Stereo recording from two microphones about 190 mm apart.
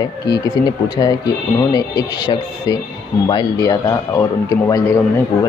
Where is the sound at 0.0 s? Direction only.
20° left (ahead or behind).